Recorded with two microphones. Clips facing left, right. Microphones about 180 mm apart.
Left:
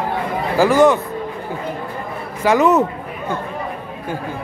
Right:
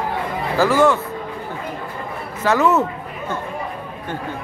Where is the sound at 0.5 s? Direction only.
15° left (ahead or behind).